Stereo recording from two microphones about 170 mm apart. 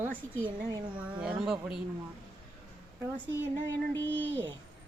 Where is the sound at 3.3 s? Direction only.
10° right (ahead or behind).